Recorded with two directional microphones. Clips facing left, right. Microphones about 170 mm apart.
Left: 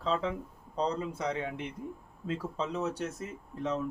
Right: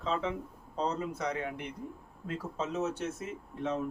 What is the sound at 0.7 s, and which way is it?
Speech, 30° left (ahead or behind).